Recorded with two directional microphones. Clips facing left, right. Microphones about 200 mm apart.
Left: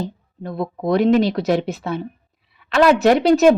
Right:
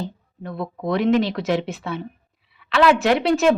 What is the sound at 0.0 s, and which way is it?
Speech, 40° left (ahead or behind).